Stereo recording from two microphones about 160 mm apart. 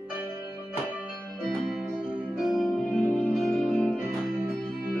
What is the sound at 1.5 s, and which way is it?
Music, centre (ahead or behind).